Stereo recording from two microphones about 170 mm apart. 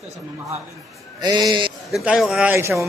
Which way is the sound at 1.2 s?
25° right (ahead or behind).